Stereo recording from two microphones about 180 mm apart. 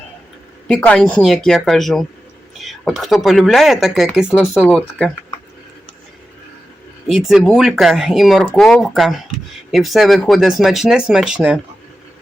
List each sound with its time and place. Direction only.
0.7 s speech: 5° left (ahead or behind)
7.1 s speech: centre (ahead or behind)